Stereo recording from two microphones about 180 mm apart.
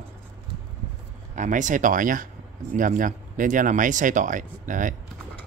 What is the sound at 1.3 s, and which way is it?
Speech, 45° right (ahead or behind).